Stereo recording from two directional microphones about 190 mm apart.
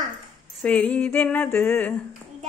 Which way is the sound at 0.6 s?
5° left (ahead or behind).